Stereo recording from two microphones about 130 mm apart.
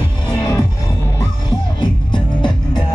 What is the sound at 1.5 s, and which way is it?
Music, 35° left (ahead or behind).